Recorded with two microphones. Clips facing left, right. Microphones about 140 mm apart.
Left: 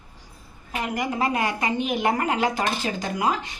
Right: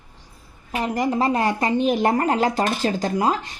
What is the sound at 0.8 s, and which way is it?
Speech, 35° right (ahead or behind).